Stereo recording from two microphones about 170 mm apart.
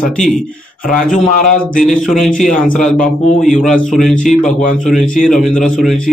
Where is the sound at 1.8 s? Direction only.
Centre (ahead or behind).